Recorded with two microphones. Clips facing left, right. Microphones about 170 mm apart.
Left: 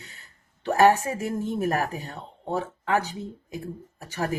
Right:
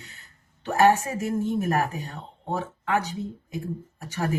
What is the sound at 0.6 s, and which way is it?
Speech, 35° left (ahead or behind).